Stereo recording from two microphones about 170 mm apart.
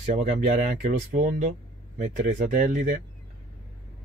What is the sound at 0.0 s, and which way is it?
Speech, 50° right (ahead or behind).